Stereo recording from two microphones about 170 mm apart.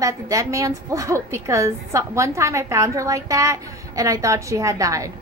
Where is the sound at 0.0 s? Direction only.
20° right (ahead or behind).